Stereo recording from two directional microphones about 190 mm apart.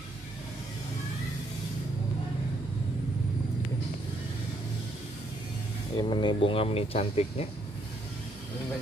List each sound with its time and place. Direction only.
5.9 s speech: 25° left (ahead or behind)